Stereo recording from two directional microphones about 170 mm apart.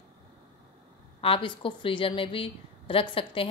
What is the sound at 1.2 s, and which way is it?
A woman's voice, 30° left (ahead or behind).